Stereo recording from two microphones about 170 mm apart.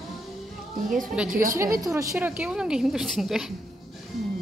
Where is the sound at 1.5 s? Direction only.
20° right (ahead or behind); by 3.4 s centre (ahead or behind).